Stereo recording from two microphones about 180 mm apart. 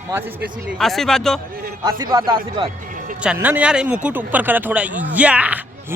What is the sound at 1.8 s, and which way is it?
Speech, 20° right (ahead or behind).